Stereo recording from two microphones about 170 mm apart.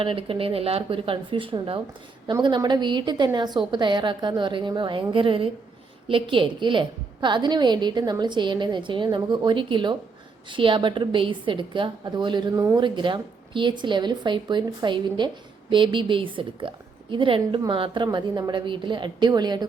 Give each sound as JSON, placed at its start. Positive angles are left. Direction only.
{"t": 0.0, "sound": "a woman's voice", "side_deg": -30}